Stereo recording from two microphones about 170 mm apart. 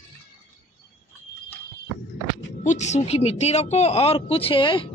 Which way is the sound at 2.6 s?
45° left (ahead or behind).